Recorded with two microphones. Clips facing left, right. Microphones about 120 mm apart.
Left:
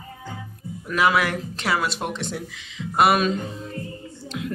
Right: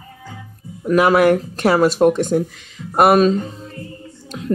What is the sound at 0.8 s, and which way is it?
Speech, 45° right (ahead or behind).